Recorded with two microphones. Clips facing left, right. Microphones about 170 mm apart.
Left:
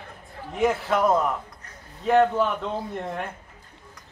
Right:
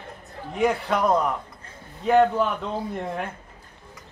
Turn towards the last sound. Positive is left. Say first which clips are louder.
# right 1 dB
turn(degrees=0)  # may be behind; listen again after turning